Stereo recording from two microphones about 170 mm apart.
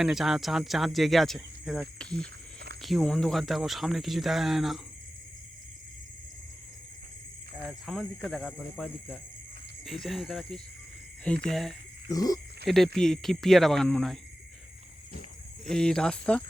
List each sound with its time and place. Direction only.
0.0 s speech: 5° right (ahead or behind)
2.2 s a sound: 75° right (ahead or behind)
2.8 s speech: centre (ahead or behind)
7.6 s speech: centre (ahead or behind)
12.0 s speech: 20° left (ahead or behind)
12.6 s speech: centre (ahead or behind)
15.7 s speech: 5° left (ahead or behind)